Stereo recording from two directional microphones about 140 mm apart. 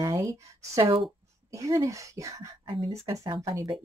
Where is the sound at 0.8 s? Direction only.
40° right (ahead or behind).